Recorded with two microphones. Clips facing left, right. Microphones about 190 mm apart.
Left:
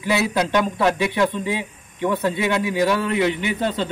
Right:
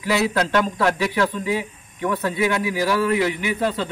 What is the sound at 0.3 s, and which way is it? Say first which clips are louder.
A man's voice: even; 15° left (ahead or behind).